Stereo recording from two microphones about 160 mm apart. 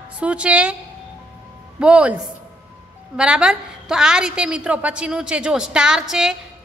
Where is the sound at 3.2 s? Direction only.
5° right (ahead or behind).